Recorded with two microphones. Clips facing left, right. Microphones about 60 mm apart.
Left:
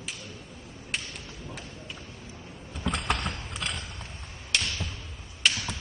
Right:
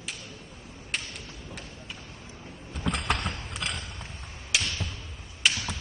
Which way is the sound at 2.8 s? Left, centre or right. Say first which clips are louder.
Even; centre.